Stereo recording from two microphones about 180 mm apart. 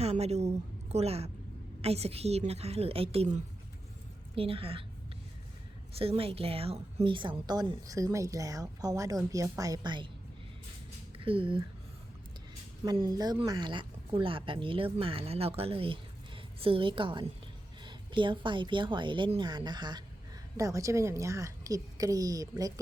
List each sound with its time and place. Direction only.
0.0 s a woman's voice: 35° right (ahead or behind)
5.9 s a woman's voice: 30° right (ahead or behind)
11.2 s speech: 30° right (ahead or behind)
12.8 s a woman's voice: 25° right (ahead or behind)